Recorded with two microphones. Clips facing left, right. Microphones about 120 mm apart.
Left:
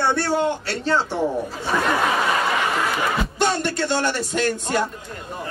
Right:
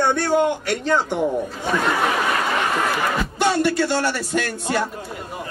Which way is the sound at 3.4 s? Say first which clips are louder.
Right 4 dB; 10° right (ahead or behind).